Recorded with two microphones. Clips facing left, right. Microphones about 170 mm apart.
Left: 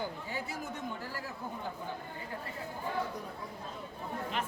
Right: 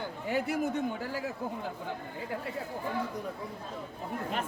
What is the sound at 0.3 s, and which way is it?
Speech, 65° right (ahead or behind).